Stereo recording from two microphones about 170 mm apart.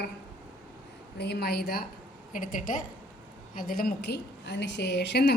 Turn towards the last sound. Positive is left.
turn(degrees=75)  # may be behind; listen again after turning